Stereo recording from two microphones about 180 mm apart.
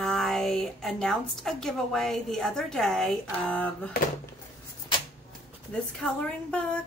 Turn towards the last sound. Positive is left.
turn(degrees=5)  # may be behind; listen again after turning